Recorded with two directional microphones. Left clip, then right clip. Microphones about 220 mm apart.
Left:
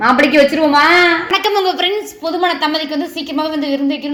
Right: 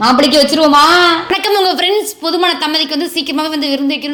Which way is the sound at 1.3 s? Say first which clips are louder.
Right 2 dB; 50° right (ahead or behind).